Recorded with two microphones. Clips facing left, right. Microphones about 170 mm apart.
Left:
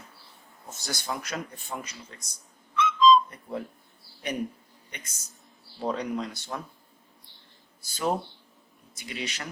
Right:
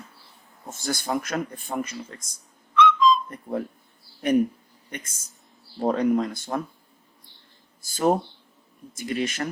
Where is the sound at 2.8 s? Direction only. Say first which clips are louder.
Right 1 dB; 55° right (ahead or behind).